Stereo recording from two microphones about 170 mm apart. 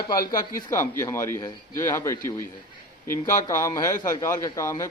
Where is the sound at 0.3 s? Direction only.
20° left (ahead or behind).